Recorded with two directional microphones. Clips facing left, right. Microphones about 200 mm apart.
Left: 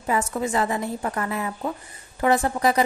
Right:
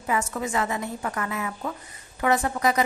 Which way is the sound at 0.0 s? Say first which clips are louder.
Left 3 dB; 35° left (ahead or behind).